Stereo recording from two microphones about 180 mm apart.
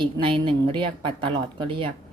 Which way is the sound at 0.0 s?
25° right (ahead or behind).